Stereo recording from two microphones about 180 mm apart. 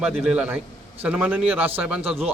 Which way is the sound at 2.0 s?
35° right (ahead or behind).